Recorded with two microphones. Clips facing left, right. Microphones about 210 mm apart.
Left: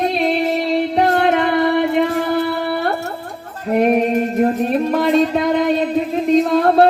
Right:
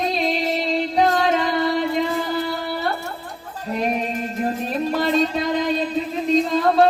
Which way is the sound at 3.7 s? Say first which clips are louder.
Left 9 dB; 55° left (ahead or behind).